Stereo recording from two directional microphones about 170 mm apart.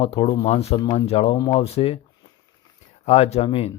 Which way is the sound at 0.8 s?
25° left (ahead or behind).